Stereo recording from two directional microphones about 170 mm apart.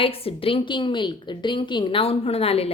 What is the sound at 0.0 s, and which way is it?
A woman's voice, 35° left (ahead or behind).